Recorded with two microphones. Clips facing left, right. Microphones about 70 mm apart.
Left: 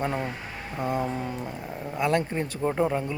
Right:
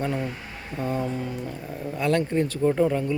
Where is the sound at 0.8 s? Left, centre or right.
Centre.